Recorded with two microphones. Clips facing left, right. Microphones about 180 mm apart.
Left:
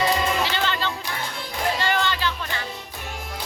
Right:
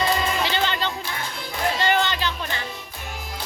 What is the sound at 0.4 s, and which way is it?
Music, 20° right (ahead or behind).